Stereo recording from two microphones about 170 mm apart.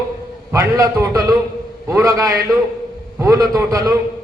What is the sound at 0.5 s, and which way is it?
A man's voice, 20° right (ahead or behind).